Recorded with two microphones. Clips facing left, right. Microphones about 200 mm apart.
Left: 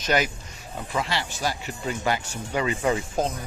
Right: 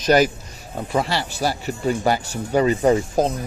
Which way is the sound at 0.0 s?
40° right (ahead or behind).